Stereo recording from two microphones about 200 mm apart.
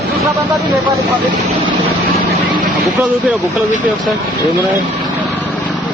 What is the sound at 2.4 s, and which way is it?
Vehicle, 25° right (ahead or behind).